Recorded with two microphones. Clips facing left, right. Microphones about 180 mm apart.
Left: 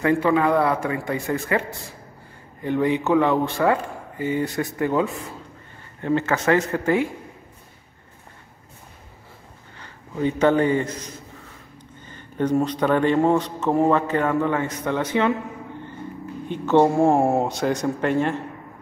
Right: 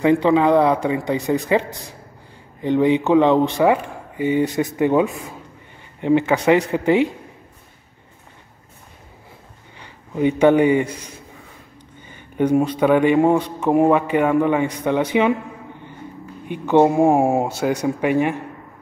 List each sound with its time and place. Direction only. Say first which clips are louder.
0.0 s a man's voice: right 4 dB; 20° right (ahead or behind)
9.8 s a man's voice: right 5 dB; 15° right (ahead or behind)
16.4 s a man's voice: right 2 dB; 15° right (ahead or behind)